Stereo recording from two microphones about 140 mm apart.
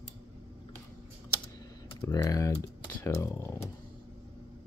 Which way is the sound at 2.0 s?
20° left (ahead or behind).